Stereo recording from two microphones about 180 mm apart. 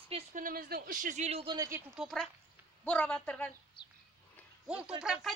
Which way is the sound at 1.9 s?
Centre (ahead or behind).